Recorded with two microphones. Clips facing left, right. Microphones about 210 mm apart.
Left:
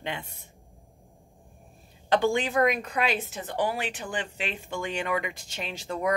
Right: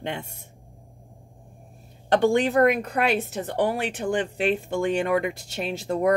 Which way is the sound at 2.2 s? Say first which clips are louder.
Right 7 dB; 60° right (ahead or behind).